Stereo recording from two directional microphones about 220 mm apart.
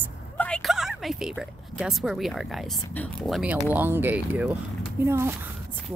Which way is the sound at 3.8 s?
10° right (ahead or behind).